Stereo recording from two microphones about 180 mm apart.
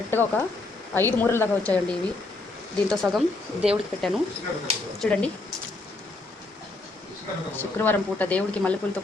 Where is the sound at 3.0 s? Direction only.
10° right (ahead or behind).